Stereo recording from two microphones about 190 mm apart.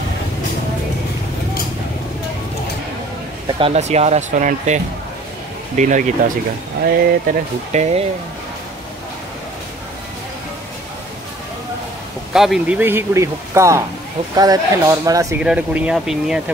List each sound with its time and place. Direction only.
3.4 s speech: 30° right (ahead or behind); by 7.3 s 50° right (ahead or behind)
7.7 s speech: 35° right (ahead or behind)
12.3 s speech: centre (ahead or behind)
15.4 s speech: 5° right (ahead or behind)